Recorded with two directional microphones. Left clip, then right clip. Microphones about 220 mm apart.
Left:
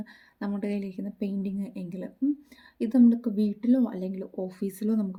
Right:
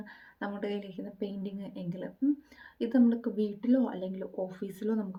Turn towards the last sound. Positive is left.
turn(degrees=40)  # may be behind; listen again after turning